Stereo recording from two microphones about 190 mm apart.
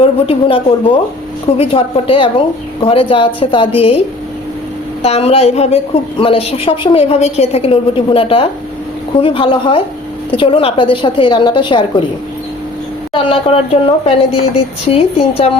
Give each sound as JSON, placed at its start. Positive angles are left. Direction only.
{"t": 0.0, "sound": "a woman's voice", "side_deg": 30}
{"t": 5.0, "sound": "a woman's voice", "side_deg": 35}
{"t": 13.1, "sound": "a woman's voice", "side_deg": 30}